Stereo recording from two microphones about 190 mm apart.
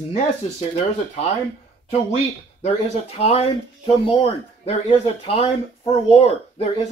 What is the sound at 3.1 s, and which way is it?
Speech, 35° left (ahead or behind).